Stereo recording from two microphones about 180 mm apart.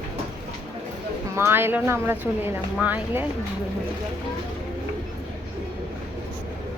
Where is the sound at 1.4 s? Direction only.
15° right (ahead or behind).